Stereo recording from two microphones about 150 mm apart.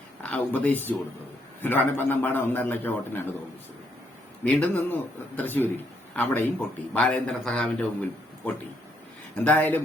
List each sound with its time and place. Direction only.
0.2 s speech: 10° left (ahead or behind)
4.4 s speech: 10° left (ahead or behind)
9.3 s speech: 10° left (ahead or behind)